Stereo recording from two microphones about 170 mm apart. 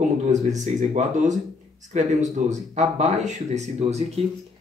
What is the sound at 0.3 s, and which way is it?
Speech, 45° right (ahead or behind).